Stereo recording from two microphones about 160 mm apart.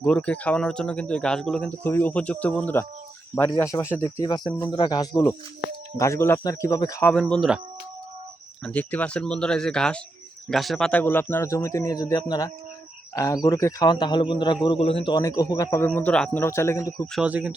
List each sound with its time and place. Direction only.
0.0 s a man's voice: 5° left (ahead or behind)
7.1 s speech: 5° left (ahead or behind)
8.6 s a man's voice: 10° left (ahead or behind); by 15.1 s 35° left (ahead or behind)
15.1 s a man's voice: 20° left (ahead or behind)
16.0 s speech: 5° left (ahead or behind)
17.1 s speech: 5° right (ahead or behind)